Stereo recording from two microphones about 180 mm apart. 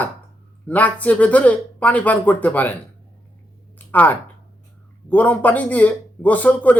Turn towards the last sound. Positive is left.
turn(degrees=10)  # may be behind; listen again after turning